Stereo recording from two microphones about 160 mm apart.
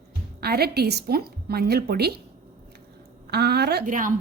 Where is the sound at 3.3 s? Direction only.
90° right.